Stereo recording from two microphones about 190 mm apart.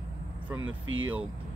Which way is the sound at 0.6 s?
90° right.